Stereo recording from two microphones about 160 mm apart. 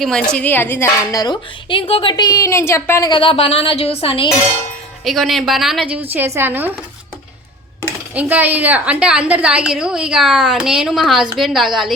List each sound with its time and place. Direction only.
0.0 s a woman's voice: 5° left (ahead or behind)
3.1 s a woman's voice: 35° left (ahead or behind)
5.0 s a woman's voice: centre (ahead or behind)
6.1 s a woman's voice: 15° right (ahead or behind)
8.1 s a woman's voice: 10° right (ahead or behind)